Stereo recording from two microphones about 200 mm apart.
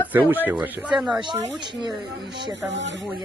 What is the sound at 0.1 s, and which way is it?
Speech, 10° right (ahead or behind).